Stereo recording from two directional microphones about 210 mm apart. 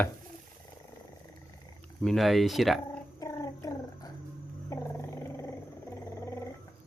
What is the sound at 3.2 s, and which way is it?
Gargling, 15° left (ahead or behind).